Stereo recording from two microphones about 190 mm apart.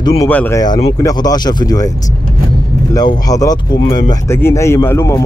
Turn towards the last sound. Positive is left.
turn(degrees=15)  # may be behind; listen again after turning